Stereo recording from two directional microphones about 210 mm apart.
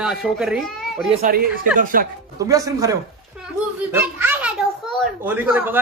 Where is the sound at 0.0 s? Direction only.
5° right (ahead or behind).